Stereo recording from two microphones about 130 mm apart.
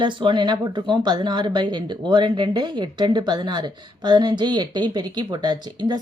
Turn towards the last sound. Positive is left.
turn(degrees=-30)  # may be behind; listen again after turning